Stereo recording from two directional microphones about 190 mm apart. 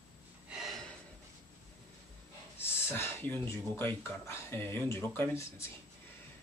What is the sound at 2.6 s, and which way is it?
Speech, 10° left (ahead or behind).